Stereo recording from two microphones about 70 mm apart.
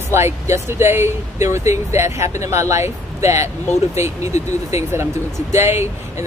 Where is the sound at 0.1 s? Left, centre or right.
Right.